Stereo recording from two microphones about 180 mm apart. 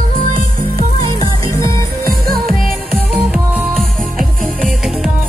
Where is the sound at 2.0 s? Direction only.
55° right (ahead or behind).